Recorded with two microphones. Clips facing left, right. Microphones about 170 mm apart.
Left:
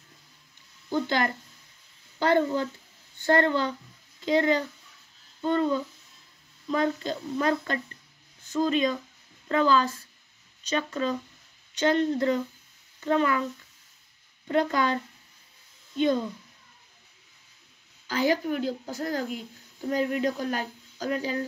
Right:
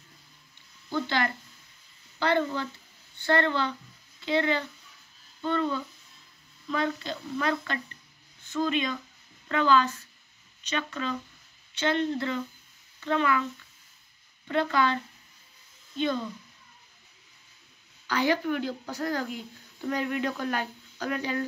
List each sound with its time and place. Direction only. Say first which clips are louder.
1.0 s a child's voice: left 2 dB; 45° left (ahead or behind)
14.5 s a child's voice: left 1 dB; 45° left (ahead or behind)
18.0 s speech: left 1 dB; 40° left (ahead or behind)